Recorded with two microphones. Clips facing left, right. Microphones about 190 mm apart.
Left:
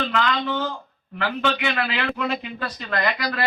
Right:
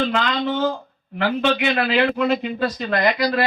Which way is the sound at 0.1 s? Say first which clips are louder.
Right 2 dB; 20° right (ahead or behind).